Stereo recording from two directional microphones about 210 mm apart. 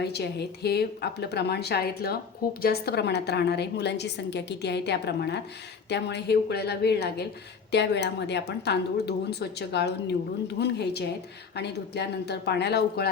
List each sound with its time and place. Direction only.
0.0 s a woman's voice: 50° left (ahead or behind)